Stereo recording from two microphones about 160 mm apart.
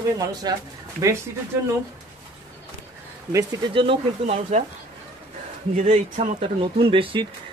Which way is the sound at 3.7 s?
35° right (ahead or behind).